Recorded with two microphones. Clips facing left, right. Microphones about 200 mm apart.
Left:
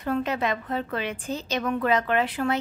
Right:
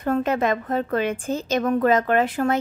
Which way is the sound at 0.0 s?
50° right (ahead or behind).